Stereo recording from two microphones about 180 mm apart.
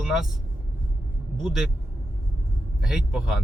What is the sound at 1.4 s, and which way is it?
Speech, centre (ahead or behind).